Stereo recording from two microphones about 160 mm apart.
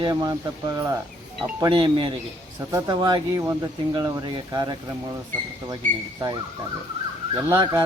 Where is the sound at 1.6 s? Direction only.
30° right (ahead or behind).